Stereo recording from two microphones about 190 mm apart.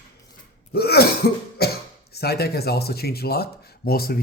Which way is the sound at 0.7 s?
55° left (ahead or behind).